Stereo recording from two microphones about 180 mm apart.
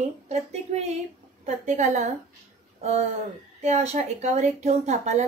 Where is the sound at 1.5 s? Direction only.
40° right (ahead or behind).